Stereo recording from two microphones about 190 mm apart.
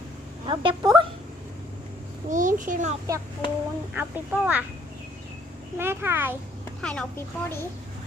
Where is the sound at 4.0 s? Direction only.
10° right (ahead or behind).